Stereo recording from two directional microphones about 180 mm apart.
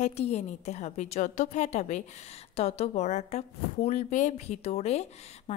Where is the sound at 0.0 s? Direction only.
35° left (ahead or behind).